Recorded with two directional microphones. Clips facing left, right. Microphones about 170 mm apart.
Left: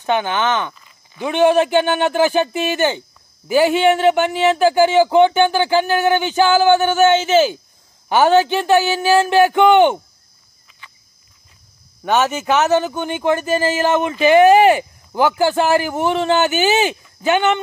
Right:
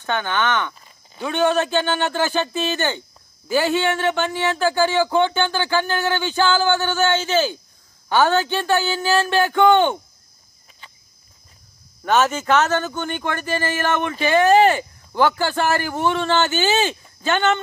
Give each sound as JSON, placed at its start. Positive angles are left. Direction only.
{"t": 0.0, "sound": "speech", "side_deg": 15}
{"t": 12.0, "sound": "speech", "side_deg": 15}